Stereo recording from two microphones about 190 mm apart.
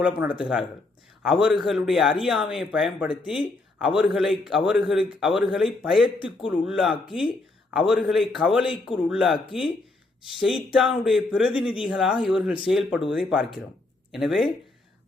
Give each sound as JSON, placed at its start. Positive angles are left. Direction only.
{"t": 0.0, "sound": "a man's voice", "side_deg": -5}
{"t": 11.4, "sound": "speech", "side_deg": 25}
{"t": 11.7, "sound": "a man's voice", "side_deg": -5}